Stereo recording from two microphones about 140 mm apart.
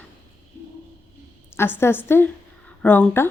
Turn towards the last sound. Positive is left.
turn(degrees=15)  # may be behind; listen again after turning